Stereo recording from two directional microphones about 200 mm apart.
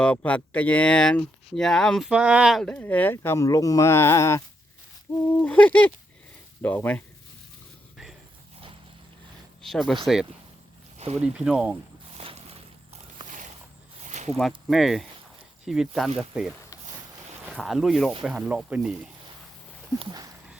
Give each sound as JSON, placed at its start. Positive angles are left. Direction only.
{"t": 0.0, "sound": "speech", "side_deg": 5}
{"t": 9.6, "sound": "speech", "side_deg": 0}
{"t": 10.9, "sound": "a sound", "side_deg": -30}
{"t": 11.2, "sound": "speech", "side_deg": -5}
{"t": 12.1, "sound": "a sound", "side_deg": -30}
{"t": 14.0, "sound": "snake", "side_deg": -35}
{"t": 14.3, "sound": "speech", "side_deg": 0}
{"t": 20.0, "sound": "speech", "side_deg": -20}